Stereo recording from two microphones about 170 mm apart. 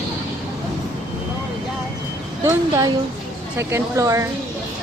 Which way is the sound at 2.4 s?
20° right (ahead or behind).